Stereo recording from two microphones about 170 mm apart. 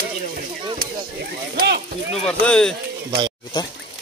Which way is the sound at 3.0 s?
25° right (ahead or behind).